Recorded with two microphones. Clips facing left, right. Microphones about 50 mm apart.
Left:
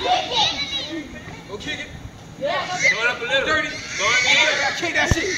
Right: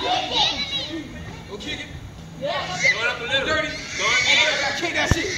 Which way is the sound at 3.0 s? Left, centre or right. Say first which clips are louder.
Left 3 dB; centre.